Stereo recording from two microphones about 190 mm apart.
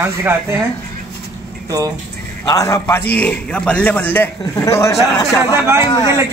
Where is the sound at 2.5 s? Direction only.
15° left (ahead or behind).